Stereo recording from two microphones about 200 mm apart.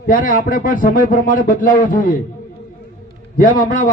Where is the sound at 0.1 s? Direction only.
45° left (ahead or behind).